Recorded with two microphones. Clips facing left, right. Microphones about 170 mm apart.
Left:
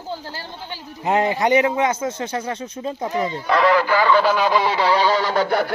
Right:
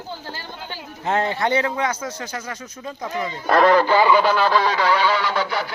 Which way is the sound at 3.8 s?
20° right (ahead or behind).